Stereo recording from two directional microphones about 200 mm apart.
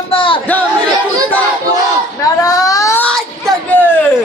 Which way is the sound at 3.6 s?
10° left (ahead or behind).